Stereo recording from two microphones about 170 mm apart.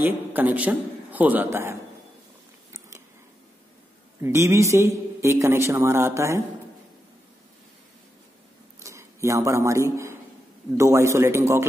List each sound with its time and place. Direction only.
0.0 s a man's voice: 10° right (ahead or behind)
4.2 s a man's voice: 15° right (ahead or behind)
8.7 s a sound: 15° right (ahead or behind)
10.8 s a man's voice: 15° right (ahead or behind)